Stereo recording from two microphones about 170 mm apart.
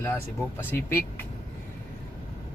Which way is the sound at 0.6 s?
15° left (ahead or behind).